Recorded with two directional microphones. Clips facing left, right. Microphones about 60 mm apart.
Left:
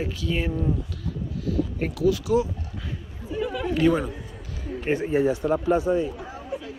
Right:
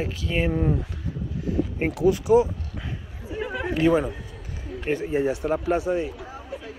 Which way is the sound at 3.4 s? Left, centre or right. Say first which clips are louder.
Left 1 dB; right.